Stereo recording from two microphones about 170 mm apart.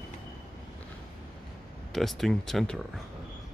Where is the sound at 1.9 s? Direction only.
Centre (ahead or behind).